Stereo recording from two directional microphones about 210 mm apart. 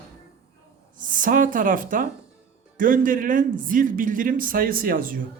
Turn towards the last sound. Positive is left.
turn(degrees=-40)  # may be behind; listen again after turning